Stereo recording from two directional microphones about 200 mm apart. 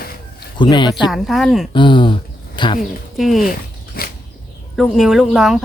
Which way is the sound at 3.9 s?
50° left (ahead or behind).